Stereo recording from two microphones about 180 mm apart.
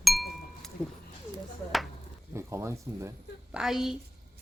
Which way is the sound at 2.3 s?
15° right (ahead or behind).